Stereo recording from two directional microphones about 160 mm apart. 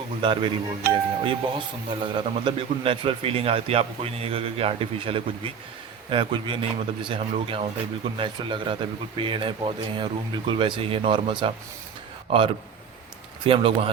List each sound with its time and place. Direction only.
0.2 s speech: 30° right (ahead or behind)
13.4 s speech: 35° right (ahead or behind)